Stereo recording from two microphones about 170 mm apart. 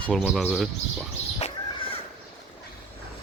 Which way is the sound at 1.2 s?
40° left (ahead or behind).